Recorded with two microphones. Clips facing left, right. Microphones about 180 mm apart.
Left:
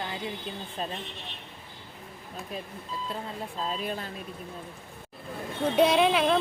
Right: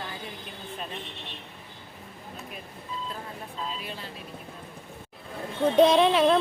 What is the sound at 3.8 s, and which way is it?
Speech, 50° left (ahead or behind).